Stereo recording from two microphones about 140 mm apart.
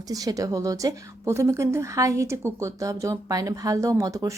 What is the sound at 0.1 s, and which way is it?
A woman's voice, 25° right (ahead or behind).